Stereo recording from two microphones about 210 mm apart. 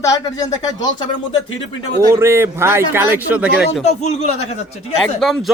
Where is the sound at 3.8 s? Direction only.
30° left (ahead or behind).